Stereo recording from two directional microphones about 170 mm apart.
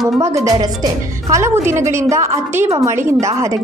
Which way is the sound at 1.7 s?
15° right (ahead or behind).